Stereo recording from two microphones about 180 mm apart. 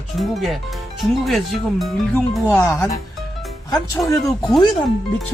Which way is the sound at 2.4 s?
10° left (ahead or behind).